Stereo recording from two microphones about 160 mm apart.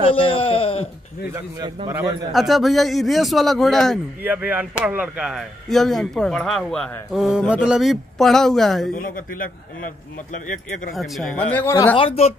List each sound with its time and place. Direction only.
0.0 s speech: 35° left (ahead or behind)
1.9 s a man's voice: 20° right (ahead or behind)
2.3 s speech: centre (ahead or behind)
4.2 s speech: 10° right (ahead or behind)
10.3 s speech: 55° left (ahead or behind)
10.9 s speech: centre (ahead or behind); by 11.9 s 20° left (ahead or behind)
12.0 s speech: 35° left (ahead or behind)